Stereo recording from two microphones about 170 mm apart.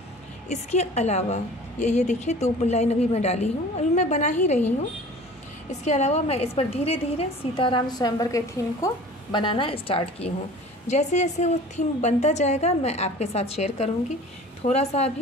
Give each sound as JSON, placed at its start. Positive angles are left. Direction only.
{"t": 0.5, "sound": "a woman's voice", "side_deg": 40}
{"t": 5.7, "sound": "a woman's voice", "side_deg": 40}